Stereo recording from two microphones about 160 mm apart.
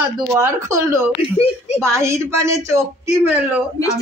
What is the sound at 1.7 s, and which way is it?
A woman's voice, 15° right (ahead or behind).